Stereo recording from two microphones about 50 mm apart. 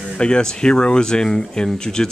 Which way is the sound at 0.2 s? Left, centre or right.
Centre.